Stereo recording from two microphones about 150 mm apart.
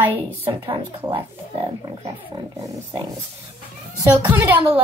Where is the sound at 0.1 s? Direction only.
35° right (ahead or behind).